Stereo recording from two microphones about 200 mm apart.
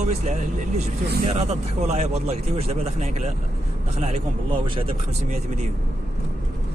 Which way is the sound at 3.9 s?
30° right (ahead or behind).